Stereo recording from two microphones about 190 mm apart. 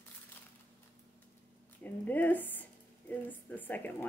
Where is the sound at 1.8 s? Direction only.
10° left (ahead or behind).